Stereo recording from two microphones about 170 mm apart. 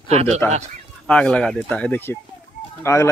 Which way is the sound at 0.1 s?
40° right (ahead or behind).